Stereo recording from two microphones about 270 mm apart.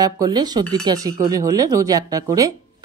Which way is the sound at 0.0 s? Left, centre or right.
Centre.